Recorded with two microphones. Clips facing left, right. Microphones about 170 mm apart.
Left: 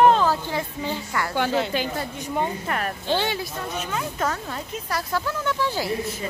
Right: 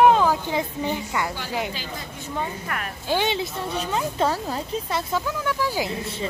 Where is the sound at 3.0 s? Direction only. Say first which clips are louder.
Right 3 dB; 15° right (ahead or behind).